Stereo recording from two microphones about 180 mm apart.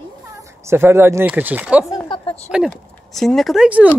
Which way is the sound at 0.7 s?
10° right (ahead or behind).